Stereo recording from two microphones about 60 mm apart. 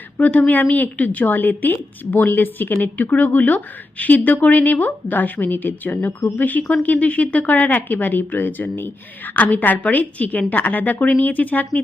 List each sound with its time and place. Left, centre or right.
0.2 s speech: left